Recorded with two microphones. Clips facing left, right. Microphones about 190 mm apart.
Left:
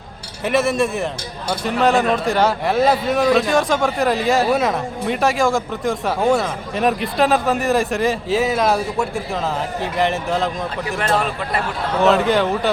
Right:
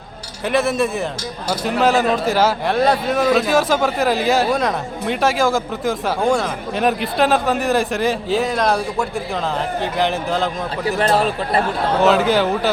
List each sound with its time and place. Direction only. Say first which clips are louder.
0.4 s a man's voice: even; centre (ahead or behind)
10.8 s a man's voice: right 4 dB; 35° right (ahead or behind)
11.9 s a man's voice: even; centre (ahead or behind)